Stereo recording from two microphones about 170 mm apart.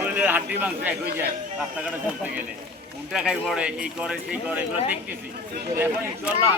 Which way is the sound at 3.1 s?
5° right (ahead or behind).